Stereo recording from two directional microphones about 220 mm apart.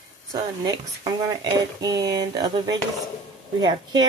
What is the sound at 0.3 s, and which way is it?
Speech, 15° right (ahead or behind).